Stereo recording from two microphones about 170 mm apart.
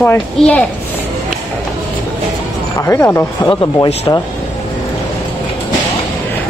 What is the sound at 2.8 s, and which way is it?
Speech, 15° left (ahead or behind).